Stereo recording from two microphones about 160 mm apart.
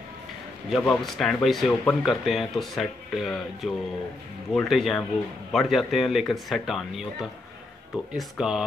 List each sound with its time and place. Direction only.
0.7 s speech: centre (ahead or behind)